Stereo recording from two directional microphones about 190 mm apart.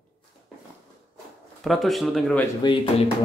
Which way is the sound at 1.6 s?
Centre (ahead or behind).